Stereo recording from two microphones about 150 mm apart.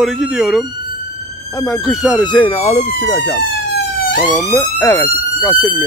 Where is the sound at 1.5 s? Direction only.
20° left (ahead or behind).